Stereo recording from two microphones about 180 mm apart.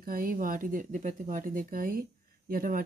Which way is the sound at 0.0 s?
50° right (ahead or behind).